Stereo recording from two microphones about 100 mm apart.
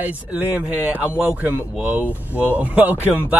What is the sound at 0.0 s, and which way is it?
Speech, 15° right (ahead or behind).